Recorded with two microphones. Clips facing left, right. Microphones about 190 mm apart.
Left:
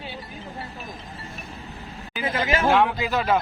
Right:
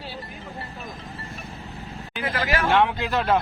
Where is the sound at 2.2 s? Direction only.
20° left (ahead or behind).